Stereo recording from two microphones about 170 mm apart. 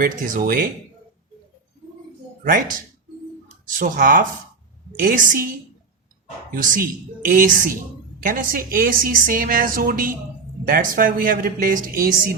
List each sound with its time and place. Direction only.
0.0 s a woman's voice: 55° right (ahead or behind)
3.7 s speech: 50° right (ahead or behind)
6.5 s a woman's voice: 55° right (ahead or behind)